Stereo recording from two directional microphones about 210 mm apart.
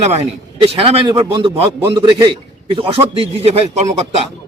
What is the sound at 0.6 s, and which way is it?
A man's voice, 25° right (ahead or behind).